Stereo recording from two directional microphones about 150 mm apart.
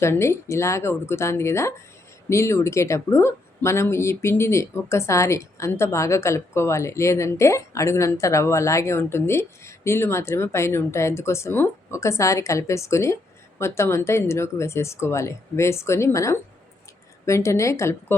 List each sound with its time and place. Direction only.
0.0 s speech: 20° left (ahead or behind)